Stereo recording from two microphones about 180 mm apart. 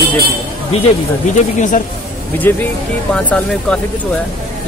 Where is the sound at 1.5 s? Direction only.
45° left (ahead or behind).